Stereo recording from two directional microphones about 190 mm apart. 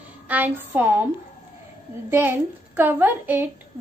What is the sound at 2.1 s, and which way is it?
A woman's voice, 10° right (ahead or behind).